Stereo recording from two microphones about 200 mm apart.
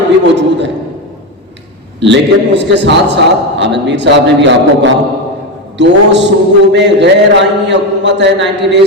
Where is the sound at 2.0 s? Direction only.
60° right (ahead or behind).